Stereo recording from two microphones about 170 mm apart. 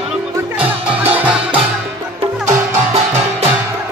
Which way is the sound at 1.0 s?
10° right (ahead or behind).